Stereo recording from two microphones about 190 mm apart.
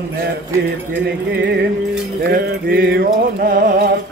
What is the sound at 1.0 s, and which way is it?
Music, 60° right (ahead or behind).